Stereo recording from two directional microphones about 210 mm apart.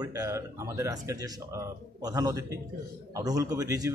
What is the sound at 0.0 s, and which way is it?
Speech, 15° right (ahead or behind).